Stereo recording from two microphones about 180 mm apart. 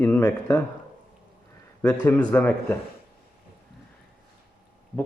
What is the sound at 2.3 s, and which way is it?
Speech, 10° left (ahead or behind).